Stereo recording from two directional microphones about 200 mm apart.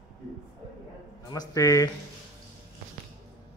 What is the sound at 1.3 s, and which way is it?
Speech, 20° left (ahead or behind).